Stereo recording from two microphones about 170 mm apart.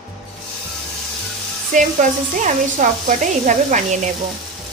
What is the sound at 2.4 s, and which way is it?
A woman's voice, 45° right (ahead or behind).